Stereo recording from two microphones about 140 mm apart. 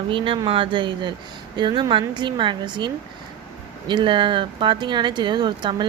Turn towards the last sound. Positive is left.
turn(degrees=-35)  # may be behind; listen again after turning